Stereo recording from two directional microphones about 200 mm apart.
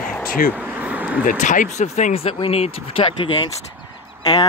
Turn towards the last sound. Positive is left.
turn(degrees=20)  # may be behind; listen again after turning